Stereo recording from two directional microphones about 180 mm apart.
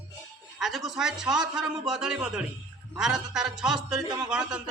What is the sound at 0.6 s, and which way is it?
A man's voice, centre (ahead or behind).